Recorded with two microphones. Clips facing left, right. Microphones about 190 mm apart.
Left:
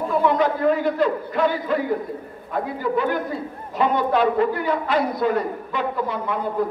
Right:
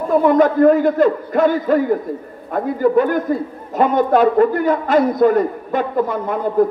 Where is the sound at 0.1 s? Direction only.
45° right (ahead or behind).